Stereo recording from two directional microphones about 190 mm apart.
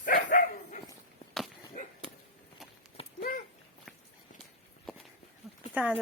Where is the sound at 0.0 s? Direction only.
45° left (ahead or behind).